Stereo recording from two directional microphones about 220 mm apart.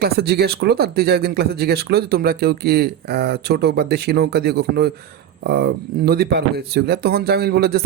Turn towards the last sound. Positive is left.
turn(degrees=-45)  # may be behind; listen again after turning